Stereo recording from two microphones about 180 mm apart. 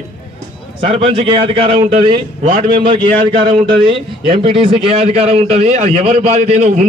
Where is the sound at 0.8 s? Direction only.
35° right (ahead or behind).